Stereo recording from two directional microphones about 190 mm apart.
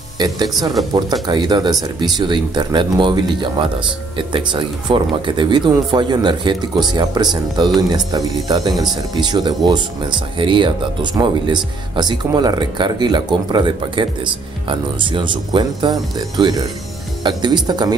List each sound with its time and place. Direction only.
0.2 s speech: 20° right (ahead or behind)